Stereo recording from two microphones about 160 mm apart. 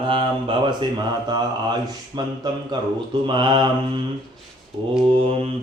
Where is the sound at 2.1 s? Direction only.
25° right (ahead or behind).